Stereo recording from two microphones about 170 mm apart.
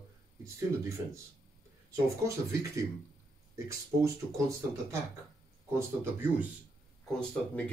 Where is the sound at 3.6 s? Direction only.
15° right (ahead or behind).